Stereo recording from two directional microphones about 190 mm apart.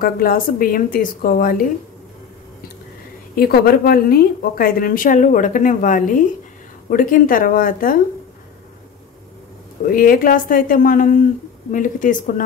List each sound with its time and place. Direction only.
0.0 s a woman's voice: 50° left (ahead or behind)
3.3 s a woman's voice: 55° left (ahead or behind)
9.8 s a woman's voice: 45° left (ahead or behind)